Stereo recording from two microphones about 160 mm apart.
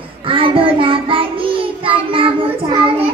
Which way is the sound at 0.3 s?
35° right (ahead or behind).